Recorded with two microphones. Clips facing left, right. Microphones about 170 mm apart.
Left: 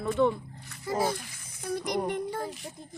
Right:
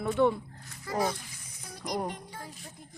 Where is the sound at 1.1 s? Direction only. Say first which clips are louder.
Left 6 dB; 70° left (ahead or behind).